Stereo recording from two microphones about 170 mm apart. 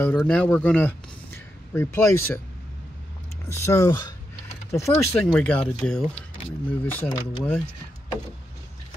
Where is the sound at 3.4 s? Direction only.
15° left (ahead or behind).